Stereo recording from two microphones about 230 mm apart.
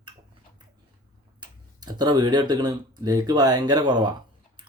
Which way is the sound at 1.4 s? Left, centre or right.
Centre.